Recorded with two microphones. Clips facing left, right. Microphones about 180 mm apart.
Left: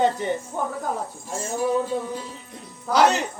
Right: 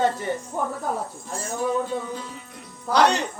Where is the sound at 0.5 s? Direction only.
5° right (ahead or behind).